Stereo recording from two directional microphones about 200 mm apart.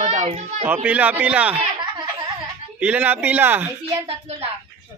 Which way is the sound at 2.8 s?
5° right (ahead or behind).